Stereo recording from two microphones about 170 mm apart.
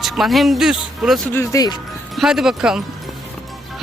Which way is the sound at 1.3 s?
15° left (ahead or behind).